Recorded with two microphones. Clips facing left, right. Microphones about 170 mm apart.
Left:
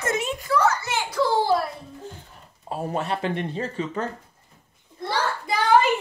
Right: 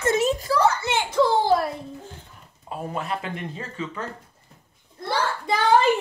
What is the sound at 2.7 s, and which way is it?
Speech, 30° left (ahead or behind).